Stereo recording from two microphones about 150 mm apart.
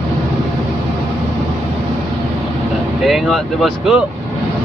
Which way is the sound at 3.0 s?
Centre (ahead or behind).